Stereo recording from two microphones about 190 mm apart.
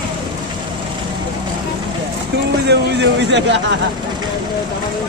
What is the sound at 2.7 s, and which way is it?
Speech, 65° right (ahead or behind).